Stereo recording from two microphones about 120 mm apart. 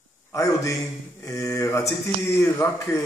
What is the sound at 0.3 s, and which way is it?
Speech, 25° left (ahead or behind).